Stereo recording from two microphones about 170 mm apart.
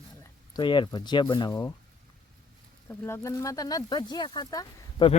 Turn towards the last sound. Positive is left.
turn(degrees=25)  # may be behind; listen again after turning